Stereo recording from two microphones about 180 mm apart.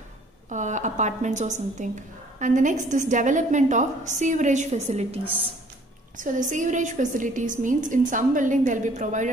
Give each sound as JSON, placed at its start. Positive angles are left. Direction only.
{"t": 0.5, "sound": "a woman's voice", "side_deg": -45}